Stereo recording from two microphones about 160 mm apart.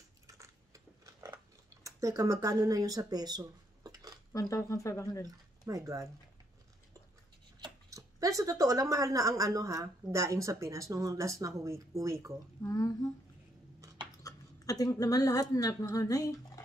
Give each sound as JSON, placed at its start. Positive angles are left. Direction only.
{"t": 0.3, "sound": "a sound", "side_deg": -20}
{"t": 4.3, "sound": "speech", "side_deg": 20}
{"t": 5.2, "sound": "speech", "side_deg": -20}
{"t": 7.6, "sound": "speech", "side_deg": -20}
{"t": 12.6, "sound": "speech", "side_deg": 20}
{"t": 14.2, "sound": "a woman's voice", "side_deg": 20}